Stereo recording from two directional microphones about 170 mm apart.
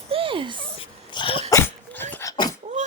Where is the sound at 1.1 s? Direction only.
30° left (ahead or behind).